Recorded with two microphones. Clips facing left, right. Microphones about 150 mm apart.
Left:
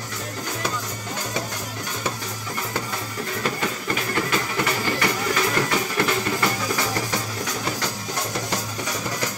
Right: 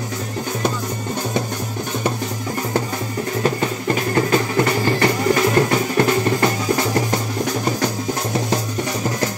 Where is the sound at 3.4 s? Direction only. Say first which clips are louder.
Right 7 dB; 35° right (ahead or behind).